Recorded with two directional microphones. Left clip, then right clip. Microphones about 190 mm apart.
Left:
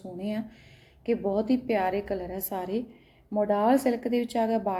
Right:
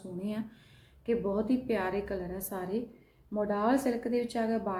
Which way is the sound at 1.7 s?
15° left (ahead or behind).